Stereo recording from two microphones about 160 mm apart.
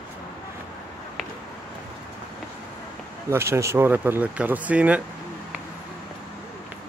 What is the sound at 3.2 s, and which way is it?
Speech, 15° right (ahead or behind).